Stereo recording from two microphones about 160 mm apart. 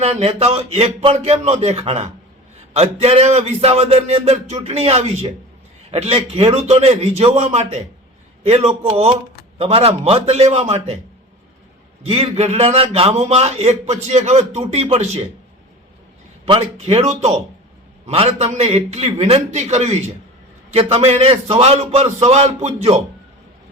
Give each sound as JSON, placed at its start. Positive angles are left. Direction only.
{"t": 0.0, "sound": "a man's voice", "side_deg": -40}
{"t": 12.0, "sound": "a man's voice", "side_deg": -35}
{"t": 16.6, "sound": "a man's voice", "side_deg": -40}